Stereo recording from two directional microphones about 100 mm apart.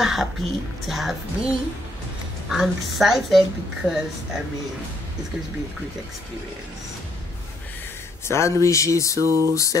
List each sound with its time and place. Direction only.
0.0 s a woman's voice: 5° right (ahead or behind)
2.5 s a woman's voice: 5° right (ahead or behind)
8.3 s speech: 30° left (ahead or behind)
9.2 s a sound: 25° right (ahead or behind)
9.5 s speech: 35° left (ahead or behind)